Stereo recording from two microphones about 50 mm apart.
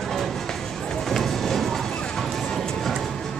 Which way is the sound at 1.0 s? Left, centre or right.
Centre.